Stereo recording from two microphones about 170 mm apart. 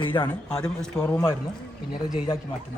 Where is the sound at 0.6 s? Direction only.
5° left (ahead or behind).